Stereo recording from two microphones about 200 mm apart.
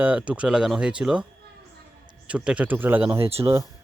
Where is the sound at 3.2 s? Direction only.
30° right (ahead or behind).